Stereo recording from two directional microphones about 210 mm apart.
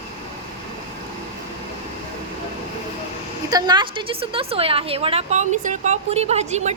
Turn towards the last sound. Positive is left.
turn(degrees=-30)  # may be behind; listen again after turning